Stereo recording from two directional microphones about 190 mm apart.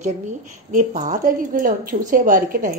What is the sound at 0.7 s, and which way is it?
A woman's voice, 40° right (ahead or behind).